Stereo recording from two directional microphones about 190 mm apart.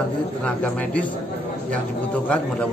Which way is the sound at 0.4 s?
5° left (ahead or behind).